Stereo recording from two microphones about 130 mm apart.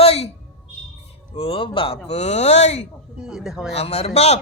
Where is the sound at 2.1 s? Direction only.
55° left (ahead or behind).